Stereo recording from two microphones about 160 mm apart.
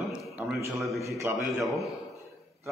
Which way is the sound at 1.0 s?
20° right (ahead or behind).